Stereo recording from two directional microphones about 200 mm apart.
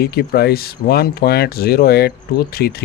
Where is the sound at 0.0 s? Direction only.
50° left (ahead or behind).